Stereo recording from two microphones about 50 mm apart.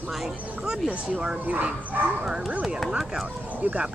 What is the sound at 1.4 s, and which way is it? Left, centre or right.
Speech, right.